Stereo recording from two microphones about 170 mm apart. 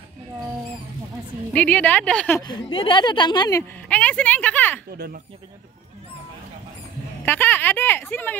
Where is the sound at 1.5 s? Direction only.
10° left (ahead or behind).